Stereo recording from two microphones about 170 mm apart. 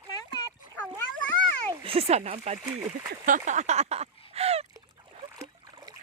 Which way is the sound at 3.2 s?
50° right (ahead or behind).